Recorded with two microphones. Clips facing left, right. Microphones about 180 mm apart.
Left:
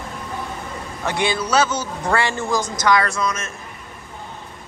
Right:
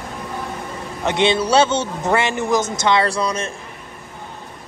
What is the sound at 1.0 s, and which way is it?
A man's voice, 20° right (ahead or behind).